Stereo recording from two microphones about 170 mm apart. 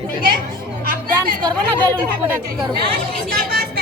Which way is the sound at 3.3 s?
60° right (ahead or behind).